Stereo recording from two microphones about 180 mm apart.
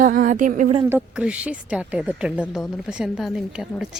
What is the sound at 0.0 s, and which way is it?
Speech, 50° right (ahead or behind).